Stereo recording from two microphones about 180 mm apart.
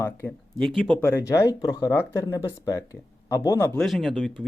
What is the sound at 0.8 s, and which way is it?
Speech, 10° left (ahead or behind).